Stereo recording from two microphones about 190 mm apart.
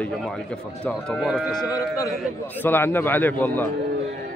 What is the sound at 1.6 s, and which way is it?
A man's voice, 20° left (ahead or behind).